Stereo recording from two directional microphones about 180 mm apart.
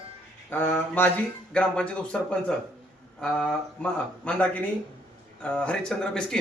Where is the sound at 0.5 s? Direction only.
10° left (ahead or behind).